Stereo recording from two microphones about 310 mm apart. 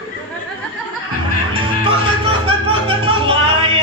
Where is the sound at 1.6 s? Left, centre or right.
Centre.